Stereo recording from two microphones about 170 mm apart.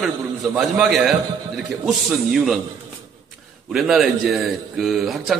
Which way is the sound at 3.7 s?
Centre (ahead or behind).